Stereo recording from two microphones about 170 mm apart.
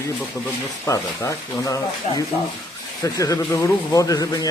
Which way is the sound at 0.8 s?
20° left (ahead or behind).